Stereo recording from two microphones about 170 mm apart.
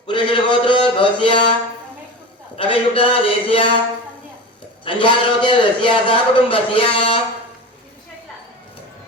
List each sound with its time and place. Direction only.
0.1 s a man's voice: 30° left (ahead or behind)
2.6 s a man's voice: 30° left (ahead or behind)
4.9 s a man's voice: 30° left (ahead or behind)